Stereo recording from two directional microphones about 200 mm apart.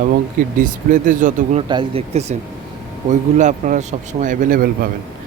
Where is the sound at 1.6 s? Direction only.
25° right (ahead or behind); by 4.9 s 45° right (ahead or behind).